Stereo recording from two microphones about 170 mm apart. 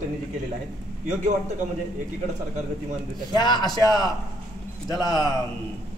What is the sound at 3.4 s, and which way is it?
Speech, 25° left (ahead or behind).